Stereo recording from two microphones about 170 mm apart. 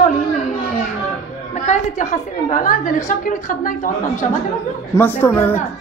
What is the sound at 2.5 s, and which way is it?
A woman's voice, 50° left (ahead or behind).